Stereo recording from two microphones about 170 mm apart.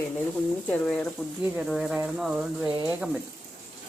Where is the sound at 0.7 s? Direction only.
5° left (ahead or behind).